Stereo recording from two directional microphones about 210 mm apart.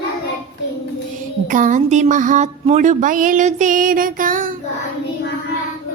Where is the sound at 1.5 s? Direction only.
40° right (ahead or behind).